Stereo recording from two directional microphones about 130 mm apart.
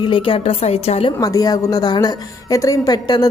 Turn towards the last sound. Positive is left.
turn(degrees=30)  # may be behind; listen again after turning